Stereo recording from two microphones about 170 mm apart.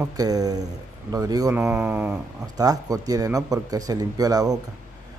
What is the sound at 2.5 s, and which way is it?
A man's voice, 20° right (ahead or behind).